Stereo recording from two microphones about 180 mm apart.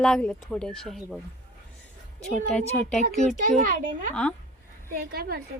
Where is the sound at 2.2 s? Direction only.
5° left (ahead or behind).